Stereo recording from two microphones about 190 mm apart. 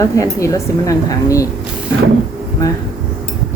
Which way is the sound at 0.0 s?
15° left (ahead or behind).